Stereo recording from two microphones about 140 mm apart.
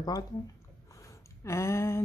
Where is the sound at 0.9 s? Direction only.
20° left (ahead or behind).